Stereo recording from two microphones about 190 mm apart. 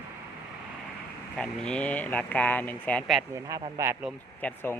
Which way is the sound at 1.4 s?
5° left (ahead or behind).